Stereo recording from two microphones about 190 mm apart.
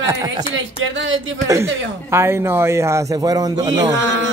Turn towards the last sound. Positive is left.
turn(degrees=-75)  # may be behind; listen again after turning